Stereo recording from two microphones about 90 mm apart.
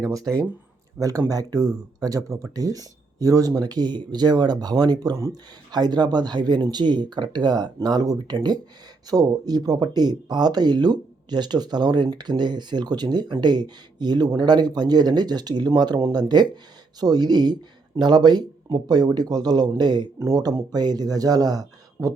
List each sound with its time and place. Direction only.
0.0 s speech: 40° right (ahead or behind)
20.1 s speech: 40° right (ahead or behind)